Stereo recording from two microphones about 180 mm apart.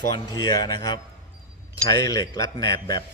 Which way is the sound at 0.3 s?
25° left (ahead or behind).